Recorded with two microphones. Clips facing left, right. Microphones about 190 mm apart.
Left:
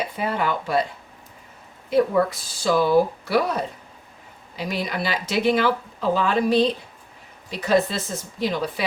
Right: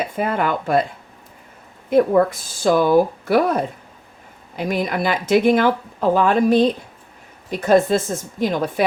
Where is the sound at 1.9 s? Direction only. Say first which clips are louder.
Right 4 dB; 50° right (ahead or behind).